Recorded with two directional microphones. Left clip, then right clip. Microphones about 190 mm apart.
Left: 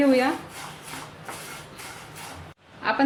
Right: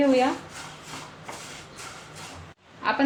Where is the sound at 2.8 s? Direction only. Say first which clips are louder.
Even; 5° left (ahead or behind).